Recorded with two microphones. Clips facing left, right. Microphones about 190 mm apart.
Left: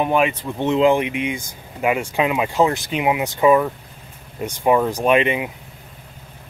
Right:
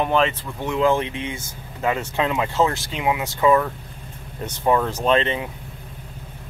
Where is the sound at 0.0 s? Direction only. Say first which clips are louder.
Left 2 dB; 15° left (ahead or behind).